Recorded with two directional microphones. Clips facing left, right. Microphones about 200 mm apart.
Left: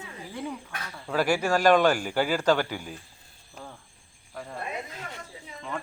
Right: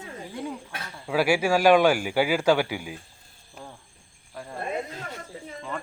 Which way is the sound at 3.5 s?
5° right (ahead or behind).